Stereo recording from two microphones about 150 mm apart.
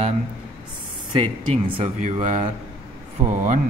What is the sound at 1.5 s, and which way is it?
Speech, 50° right (ahead or behind).